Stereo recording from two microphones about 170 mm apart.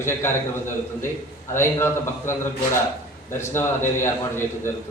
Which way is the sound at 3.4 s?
15° left (ahead or behind).